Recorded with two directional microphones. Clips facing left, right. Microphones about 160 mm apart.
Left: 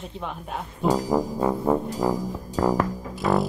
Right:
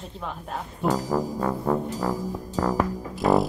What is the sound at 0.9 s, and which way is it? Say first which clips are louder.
Speech: left 3 dB; 15° left (ahead or behind).